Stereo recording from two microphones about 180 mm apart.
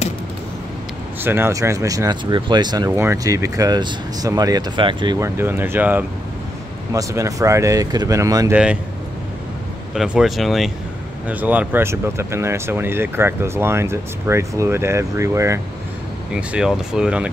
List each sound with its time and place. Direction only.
1.2 s speech: 15° right (ahead or behind)
9.9 s speech: 5° right (ahead or behind)
16.3 s speech: 5° right (ahead or behind)